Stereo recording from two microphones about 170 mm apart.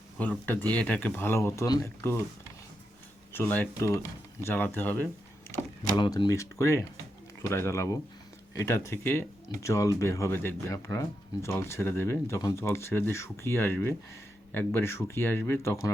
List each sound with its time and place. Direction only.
0.2 s speech: 10° left (ahead or behind)
3.3 s speech: 10° left (ahead or behind)
6.0 s speech: 25° left (ahead or behind)